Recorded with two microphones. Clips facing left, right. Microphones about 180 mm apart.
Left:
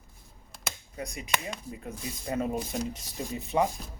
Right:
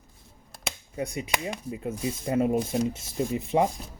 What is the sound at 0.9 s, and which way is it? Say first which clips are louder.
Speech: right 4 dB; 25° right (ahead or behind).